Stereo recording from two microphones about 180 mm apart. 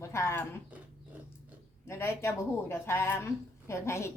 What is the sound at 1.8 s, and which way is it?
Speech, 15° left (ahead or behind).